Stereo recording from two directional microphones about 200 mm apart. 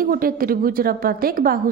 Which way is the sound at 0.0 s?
45° right (ahead or behind).